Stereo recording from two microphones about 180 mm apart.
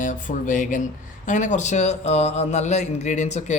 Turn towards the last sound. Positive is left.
turn(degrees=40)  # may be behind; listen again after turning